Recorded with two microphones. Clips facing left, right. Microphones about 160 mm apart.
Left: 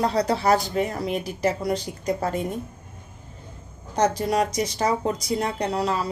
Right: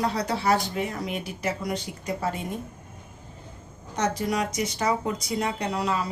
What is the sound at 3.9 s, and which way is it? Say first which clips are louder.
Speech: left 4 dB; 35° left (ahead or behind).